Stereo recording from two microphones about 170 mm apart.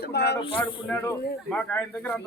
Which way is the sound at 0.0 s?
75° left (ahead or behind).